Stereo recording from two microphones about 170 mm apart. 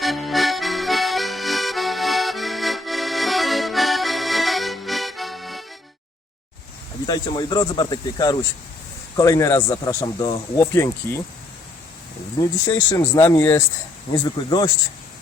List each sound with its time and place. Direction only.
0.0 s accordion: centre (ahead or behind)
7.1 s speech: 25° left (ahead or behind)
12.4 s speech: 25° left (ahead or behind)